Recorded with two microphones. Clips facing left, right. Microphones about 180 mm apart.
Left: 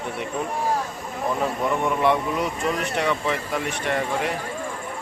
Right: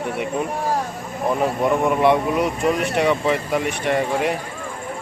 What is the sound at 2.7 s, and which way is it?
Speech, 15° right (ahead or behind).